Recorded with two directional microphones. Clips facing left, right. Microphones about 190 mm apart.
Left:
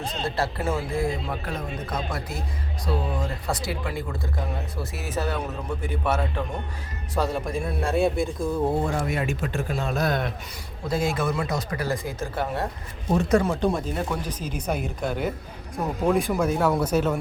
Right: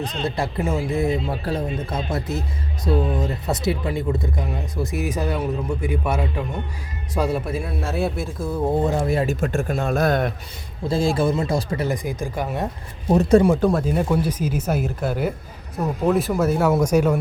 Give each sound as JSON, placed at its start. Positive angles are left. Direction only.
{"t": 0.0, "sound": "speech", "side_deg": -15}
{"t": 1.5, "sound": "a man's voice", "side_deg": -30}
{"t": 9.0, "sound": "speech", "side_deg": -30}
{"t": 9.4, "sound": "a man's voice", "side_deg": -45}
{"t": 10.8, "sound": "speech", "side_deg": -30}
{"t": 13.1, "sound": "speech", "side_deg": -30}
{"t": 13.4, "sound": "a man's voice", "side_deg": -10}